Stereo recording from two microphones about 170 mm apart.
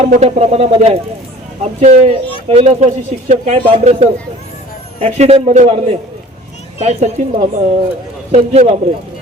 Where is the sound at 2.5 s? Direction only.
40° right (ahead or behind).